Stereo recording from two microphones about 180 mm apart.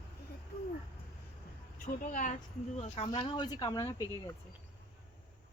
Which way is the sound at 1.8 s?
45° left (ahead or behind).